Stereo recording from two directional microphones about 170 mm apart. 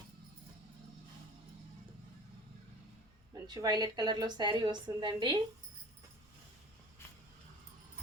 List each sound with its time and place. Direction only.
3.3 s a woman's voice: 25° right (ahead or behind)